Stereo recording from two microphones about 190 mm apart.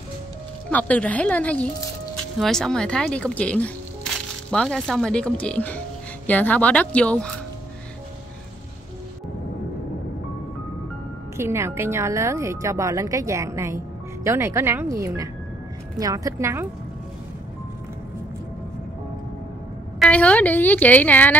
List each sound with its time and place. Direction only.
0.7 s a woman's voice: 5° left (ahead or behind)
11.3 s a woman's voice: 15° right (ahead or behind)
20.0 s a woman's voice: 5° left (ahead or behind)